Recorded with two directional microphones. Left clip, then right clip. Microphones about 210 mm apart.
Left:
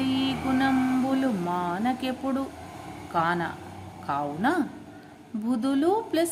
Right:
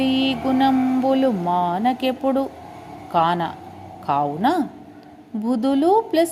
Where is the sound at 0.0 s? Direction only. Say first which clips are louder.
Right 7 dB; 25° right (ahead or behind).